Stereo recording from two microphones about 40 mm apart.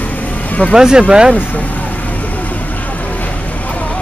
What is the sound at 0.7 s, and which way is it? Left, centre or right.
Speech, centre.